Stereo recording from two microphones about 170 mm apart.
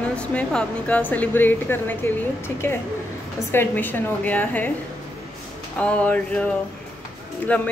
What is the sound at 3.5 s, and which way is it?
Speech, 10° left (ahead or behind).